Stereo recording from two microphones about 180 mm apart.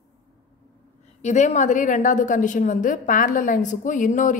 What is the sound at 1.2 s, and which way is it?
A woman's voice, 40° left (ahead or behind).